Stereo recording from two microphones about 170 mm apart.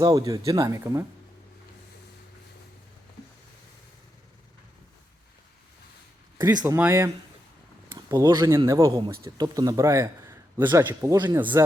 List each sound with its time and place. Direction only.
0.0 s speech: 20° right (ahead or behind)
6.4 s a man's voice: 20° right (ahead or behind)